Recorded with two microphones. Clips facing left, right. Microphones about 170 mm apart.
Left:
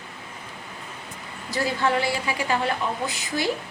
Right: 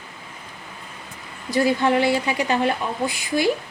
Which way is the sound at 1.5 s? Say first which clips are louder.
Right 5 dB; 20° right (ahead or behind).